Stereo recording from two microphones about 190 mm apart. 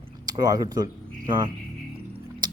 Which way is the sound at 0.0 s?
20° right (ahead or behind).